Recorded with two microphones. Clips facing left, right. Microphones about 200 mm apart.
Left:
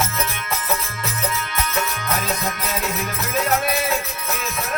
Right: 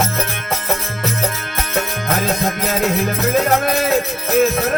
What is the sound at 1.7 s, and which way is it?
Music, 50° right (ahead or behind).